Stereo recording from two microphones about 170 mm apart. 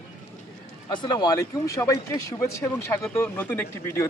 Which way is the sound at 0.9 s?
25° left (ahead or behind).